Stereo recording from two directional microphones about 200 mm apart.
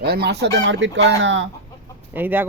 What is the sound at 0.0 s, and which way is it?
Speech, 50° right (ahead or behind).